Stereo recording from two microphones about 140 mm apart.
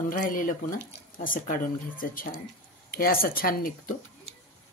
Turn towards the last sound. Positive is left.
turn(degrees=90)